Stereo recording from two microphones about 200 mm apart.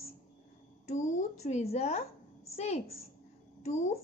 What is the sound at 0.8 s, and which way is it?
A child's voice, 35° left (ahead or behind).